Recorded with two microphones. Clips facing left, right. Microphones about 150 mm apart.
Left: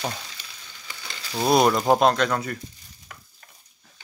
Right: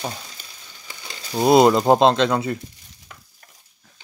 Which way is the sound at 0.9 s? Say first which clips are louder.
Right 4 dB; 20° right (ahead or behind).